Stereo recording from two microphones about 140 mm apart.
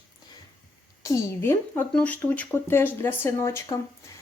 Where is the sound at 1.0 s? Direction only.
20° left (ahead or behind).